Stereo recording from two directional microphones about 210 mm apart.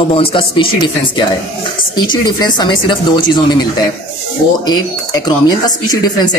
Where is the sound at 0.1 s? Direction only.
25° left (ahead or behind).